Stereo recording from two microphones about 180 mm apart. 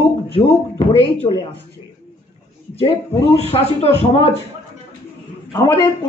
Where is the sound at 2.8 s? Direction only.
35° left (ahead or behind).